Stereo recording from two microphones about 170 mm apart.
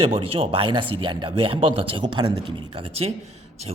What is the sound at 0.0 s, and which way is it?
A man's voice, 30° right (ahead or behind).